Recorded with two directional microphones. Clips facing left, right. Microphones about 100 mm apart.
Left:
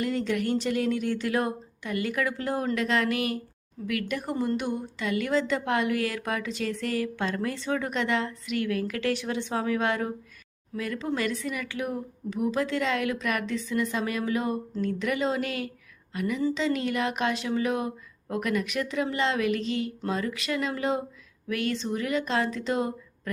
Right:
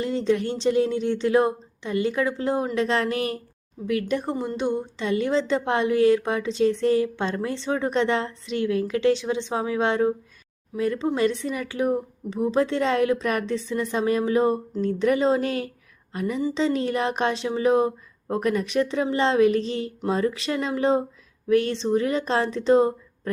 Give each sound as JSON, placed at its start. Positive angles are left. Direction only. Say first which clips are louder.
{"t": 0.0, "sound": "a woman's voice", "louder": "right 4 dB", "side_deg": -25}